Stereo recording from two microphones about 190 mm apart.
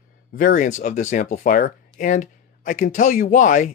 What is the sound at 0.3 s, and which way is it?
Speech, 45° left (ahead or behind).